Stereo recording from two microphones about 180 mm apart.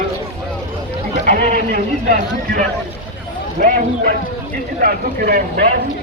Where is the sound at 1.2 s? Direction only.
50° right (ahead or behind).